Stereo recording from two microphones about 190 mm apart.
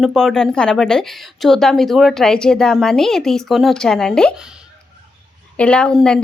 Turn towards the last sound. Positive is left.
turn(degrees=5)  # may be behind; listen again after turning